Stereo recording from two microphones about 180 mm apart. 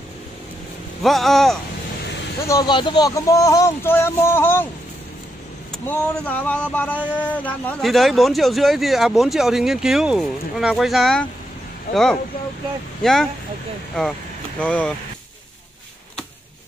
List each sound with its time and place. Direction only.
1.0 s speech: centre (ahead or behind)
2.4 s speech: 20° left (ahead or behind)
5.7 s speech: 10° left (ahead or behind)
14.6 s speech: 5° left (ahead or behind)